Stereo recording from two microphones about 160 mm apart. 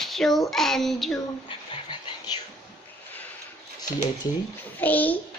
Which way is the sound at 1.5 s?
30° left (ahead or behind).